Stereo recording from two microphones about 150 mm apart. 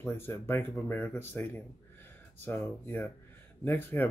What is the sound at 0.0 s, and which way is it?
Speech, 15° left (ahead or behind).